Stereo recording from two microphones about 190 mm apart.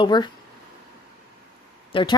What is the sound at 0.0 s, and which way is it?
Speech, 25° left (ahead or behind).